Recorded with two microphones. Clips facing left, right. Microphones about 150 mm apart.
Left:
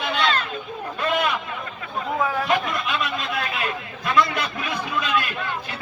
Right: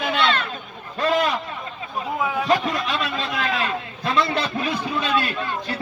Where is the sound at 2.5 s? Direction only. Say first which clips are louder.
Right 2 dB; 35° right (ahead or behind).